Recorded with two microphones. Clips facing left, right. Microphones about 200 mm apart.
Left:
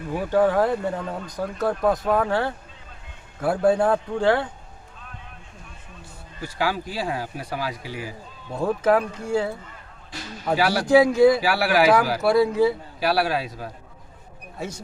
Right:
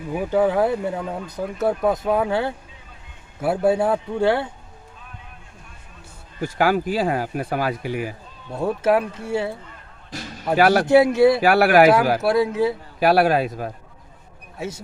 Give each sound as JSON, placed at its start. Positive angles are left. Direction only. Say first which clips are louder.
{"t": 0.1, "sound": "speech", "louder": "right 1 dB", "side_deg": -10}
{"t": 6.4, "sound": "speech", "louder": "right 6 dB", "side_deg": -50}
{"t": 8.5, "sound": "speech", "louder": "right 1 dB", "side_deg": -5}
{"t": 10.6, "sound": "a man's voice", "louder": "right 7 dB", "side_deg": -50}
{"t": 11.0, "sound": "speech", "louder": "even", "side_deg": -5}
{"t": 11.3, "sound": "a man's voice", "louder": "right 6 dB", "side_deg": -55}
{"t": 12.2, "sound": "speech", "louder": "left 1 dB", "side_deg": 0}
{"t": 13.0, "sound": "a man's voice", "louder": "right 7 dB", "side_deg": -50}